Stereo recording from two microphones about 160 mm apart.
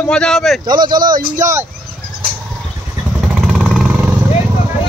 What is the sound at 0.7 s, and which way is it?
Speech, 25° right (ahead or behind).